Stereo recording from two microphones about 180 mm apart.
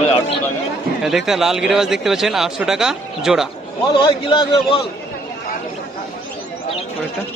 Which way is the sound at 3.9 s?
25° left (ahead or behind).